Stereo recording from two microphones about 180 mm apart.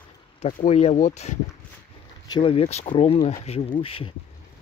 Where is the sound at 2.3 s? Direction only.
30° left (ahead or behind).